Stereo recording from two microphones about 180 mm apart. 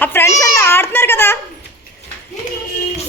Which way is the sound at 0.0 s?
10° left (ahead or behind).